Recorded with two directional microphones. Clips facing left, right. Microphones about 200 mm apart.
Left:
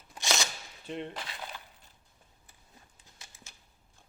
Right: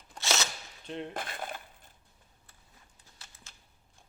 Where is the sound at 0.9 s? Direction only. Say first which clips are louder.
Left 1 dB; centre (ahead or behind).